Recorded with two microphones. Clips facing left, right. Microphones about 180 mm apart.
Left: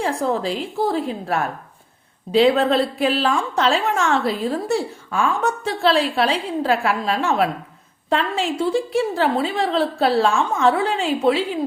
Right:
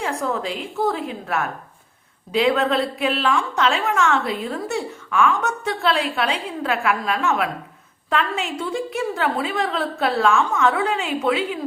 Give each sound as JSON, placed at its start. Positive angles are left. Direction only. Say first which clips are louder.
{"t": 0.0, "sound": "a woman's voice", "louder": "left 3 dB", "side_deg": 30}